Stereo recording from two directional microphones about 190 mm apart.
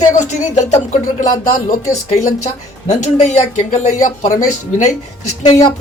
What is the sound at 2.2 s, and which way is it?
A woman's voice, 40° left (ahead or behind).